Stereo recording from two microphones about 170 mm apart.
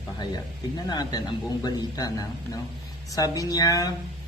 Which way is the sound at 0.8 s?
25° left (ahead or behind).